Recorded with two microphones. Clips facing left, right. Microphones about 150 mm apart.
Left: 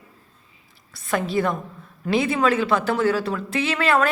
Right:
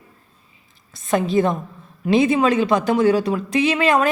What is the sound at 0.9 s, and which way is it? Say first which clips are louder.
A woman's voice: right 5 dB; 20° right (ahead or behind).